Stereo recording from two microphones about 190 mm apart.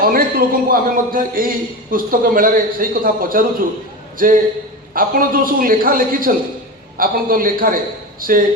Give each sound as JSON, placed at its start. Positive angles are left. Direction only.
{"t": 0.0, "sound": "a man's voice", "side_deg": -50}